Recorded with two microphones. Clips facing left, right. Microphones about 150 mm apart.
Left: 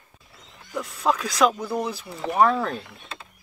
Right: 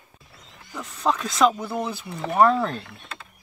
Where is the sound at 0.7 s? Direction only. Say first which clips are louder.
Left 1 dB; 5° left (ahead or behind).